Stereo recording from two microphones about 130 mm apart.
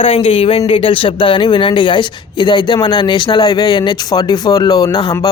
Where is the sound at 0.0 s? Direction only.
45° left (ahead or behind).